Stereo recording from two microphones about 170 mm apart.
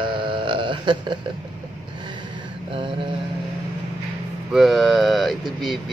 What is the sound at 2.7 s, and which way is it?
Mantra, 30° right (ahead or behind).